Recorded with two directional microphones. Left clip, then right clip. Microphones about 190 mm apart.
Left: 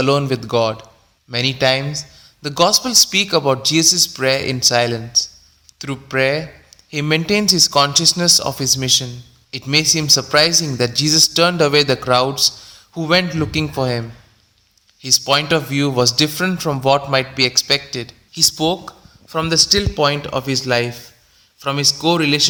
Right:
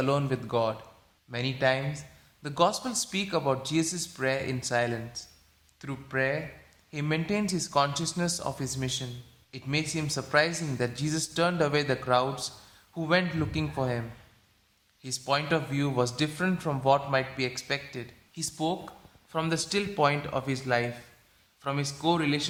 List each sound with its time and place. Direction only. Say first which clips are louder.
0.0 s a man's voice: left 11 dB; 30° left (ahead or behind)
15.2 s a man's voice: left 7 dB; 35° left (ahead or behind)